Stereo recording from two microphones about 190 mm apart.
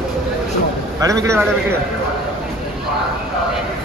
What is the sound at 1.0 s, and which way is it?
Speech, 15° right (ahead or behind).